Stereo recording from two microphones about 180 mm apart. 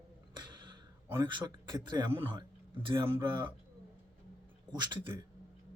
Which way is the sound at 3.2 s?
25° right (ahead or behind).